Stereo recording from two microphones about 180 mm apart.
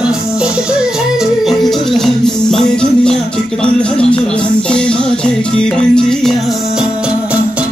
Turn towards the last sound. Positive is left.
turn(degrees=5)  # may be behind; listen again after turning